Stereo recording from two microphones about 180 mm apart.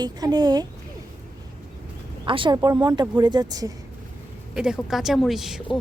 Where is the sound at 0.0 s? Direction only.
25° right (ahead or behind).